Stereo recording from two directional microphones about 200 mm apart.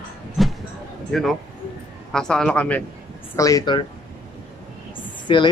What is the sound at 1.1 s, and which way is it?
Speech, centre (ahead or behind).